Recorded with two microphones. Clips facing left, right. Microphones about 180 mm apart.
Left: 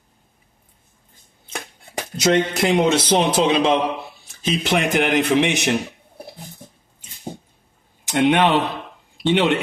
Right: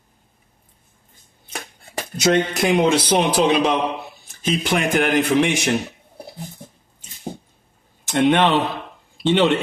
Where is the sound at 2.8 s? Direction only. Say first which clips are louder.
Even; 25° left (ahead or behind).